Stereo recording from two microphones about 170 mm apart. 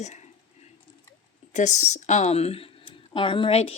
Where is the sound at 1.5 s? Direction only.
45° left (ahead or behind).